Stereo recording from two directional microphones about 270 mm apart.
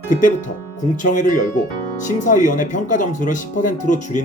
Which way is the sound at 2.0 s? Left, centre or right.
Left.